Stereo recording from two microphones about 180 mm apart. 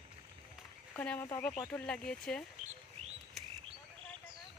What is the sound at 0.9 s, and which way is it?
Speech, 10° left (ahead or behind).